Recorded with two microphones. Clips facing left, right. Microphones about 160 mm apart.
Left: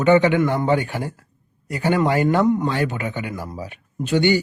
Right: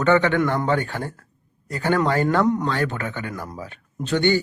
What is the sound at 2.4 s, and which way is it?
A man's voice, 5° left (ahead or behind).